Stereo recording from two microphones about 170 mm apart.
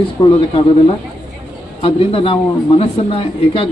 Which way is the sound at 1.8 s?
35° left (ahead or behind).